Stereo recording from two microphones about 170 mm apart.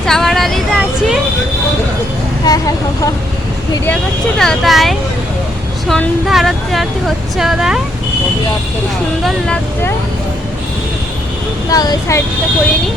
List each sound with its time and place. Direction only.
0.0 s a sound: centre (ahead or behind)
2.4 s speech: 20° left (ahead or behind)
4.4 s speech: centre (ahead or behind)
9.2 s speech: 5° left (ahead or behind)
11.7 s speech: 20° left (ahead or behind)